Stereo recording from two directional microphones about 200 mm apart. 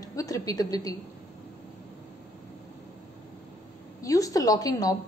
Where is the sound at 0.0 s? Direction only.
15° left (ahead or behind).